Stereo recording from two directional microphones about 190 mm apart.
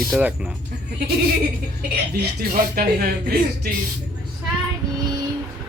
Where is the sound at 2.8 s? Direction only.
50° right (ahead or behind).